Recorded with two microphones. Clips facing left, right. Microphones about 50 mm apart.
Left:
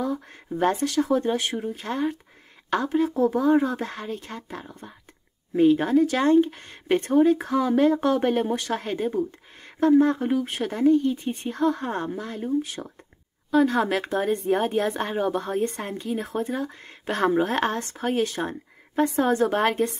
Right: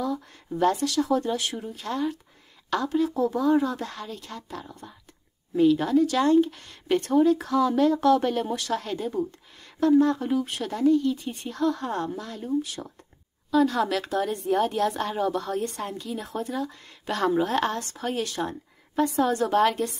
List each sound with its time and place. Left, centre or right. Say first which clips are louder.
0.6 s speech: even; left
12.8 s speech: left 2 dB; centre
13.5 s speech: left 2 dB; left